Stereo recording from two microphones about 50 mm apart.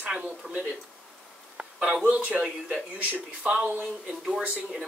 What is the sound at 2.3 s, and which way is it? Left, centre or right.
Speech, right.